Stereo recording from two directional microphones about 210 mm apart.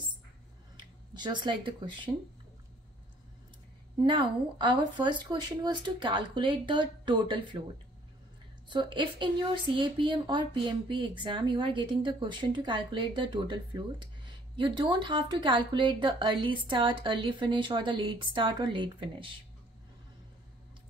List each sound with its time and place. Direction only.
1.1 s speech: 20° right (ahead or behind)
4.0 s speech: 25° right (ahead or behind)
8.6 s speech: 20° right (ahead or behind)